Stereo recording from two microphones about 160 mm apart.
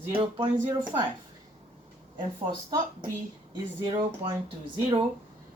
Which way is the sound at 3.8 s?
30° right (ahead or behind).